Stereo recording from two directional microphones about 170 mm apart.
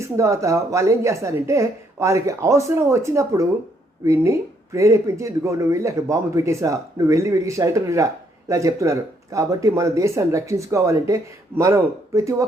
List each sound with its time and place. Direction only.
0.0 s speech: 15° right (ahead or behind)